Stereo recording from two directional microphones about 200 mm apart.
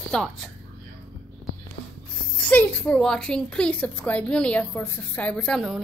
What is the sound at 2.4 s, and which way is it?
A woman's voice, 5° left (ahead or behind).